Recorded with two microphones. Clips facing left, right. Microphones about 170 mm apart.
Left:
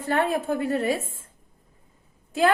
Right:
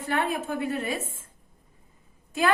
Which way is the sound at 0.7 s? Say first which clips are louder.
Left 5 dB; 40° left (ahead or behind).